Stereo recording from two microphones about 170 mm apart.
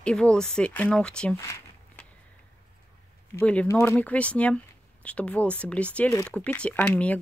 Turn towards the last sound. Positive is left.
turn(degrees=10)  # may be behind; listen again after turning